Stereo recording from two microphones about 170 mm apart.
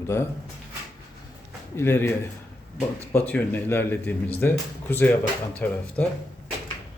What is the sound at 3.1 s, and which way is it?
Speech, 10° left (ahead or behind).